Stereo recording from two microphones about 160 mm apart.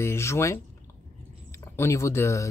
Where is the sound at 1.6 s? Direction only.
15° left (ahead or behind).